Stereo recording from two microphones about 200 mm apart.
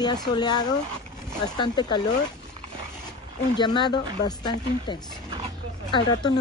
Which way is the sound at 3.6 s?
20° left (ahead or behind).